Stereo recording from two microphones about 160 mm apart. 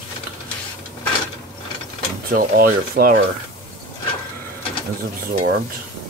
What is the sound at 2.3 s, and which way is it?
Speech, 65° right (ahead or behind).